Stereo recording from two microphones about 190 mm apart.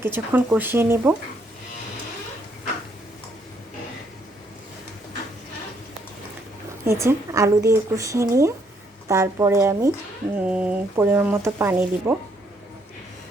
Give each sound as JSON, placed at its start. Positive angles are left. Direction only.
{"t": 0.0, "sound": "speech", "side_deg": -10}
{"t": 6.8, "sound": "speech", "side_deg": -15}